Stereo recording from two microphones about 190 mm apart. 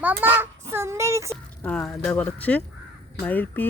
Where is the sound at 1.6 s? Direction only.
5° left (ahead or behind).